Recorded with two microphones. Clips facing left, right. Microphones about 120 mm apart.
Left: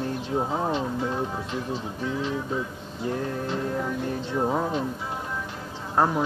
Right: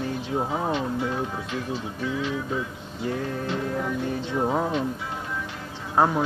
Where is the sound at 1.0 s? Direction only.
30° left (ahead or behind).